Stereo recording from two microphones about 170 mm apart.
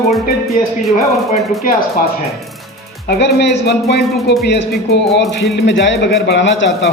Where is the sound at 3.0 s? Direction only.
70° left (ahead or behind).